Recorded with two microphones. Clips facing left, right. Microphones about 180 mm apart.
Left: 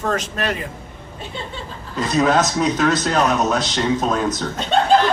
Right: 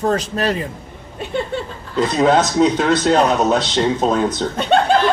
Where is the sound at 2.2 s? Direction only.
30° right (ahead or behind).